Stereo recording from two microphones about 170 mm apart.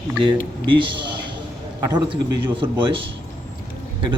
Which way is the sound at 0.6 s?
30° right (ahead or behind).